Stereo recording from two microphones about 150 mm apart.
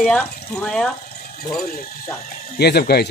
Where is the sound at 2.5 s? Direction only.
90° left.